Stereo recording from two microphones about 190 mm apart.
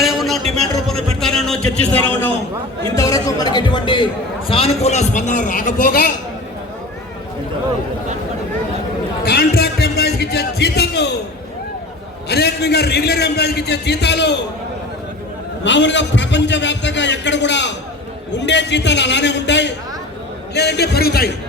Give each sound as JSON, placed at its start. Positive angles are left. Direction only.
{"t": 0.0, "sound": "a sound", "side_deg": 0}
{"t": 2.9, "sound": "a man's voice", "side_deg": 15}
{"t": 9.3, "sound": "a man's voice", "side_deg": 55}
{"t": 12.3, "sound": "a man's voice", "side_deg": 60}
{"t": 15.6, "sound": "a man's voice", "side_deg": 70}